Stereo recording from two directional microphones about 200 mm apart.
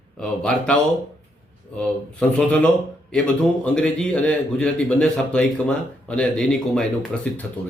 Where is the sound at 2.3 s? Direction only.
5° left (ahead or behind).